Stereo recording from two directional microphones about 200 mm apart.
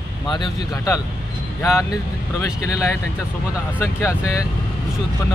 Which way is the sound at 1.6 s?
15° left (ahead or behind).